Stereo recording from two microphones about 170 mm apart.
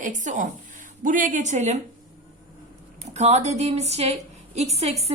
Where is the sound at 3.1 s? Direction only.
40° right (ahead or behind).